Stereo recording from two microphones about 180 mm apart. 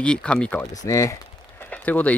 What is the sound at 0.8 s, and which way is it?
Speech, 15° left (ahead or behind).